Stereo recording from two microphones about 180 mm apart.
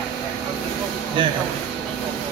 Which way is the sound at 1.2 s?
25° right (ahead or behind).